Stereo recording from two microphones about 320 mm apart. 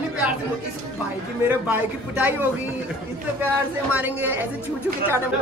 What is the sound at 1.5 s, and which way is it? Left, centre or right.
Speech, centre.